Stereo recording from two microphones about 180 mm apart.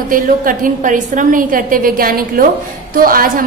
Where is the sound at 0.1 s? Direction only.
50° right (ahead or behind).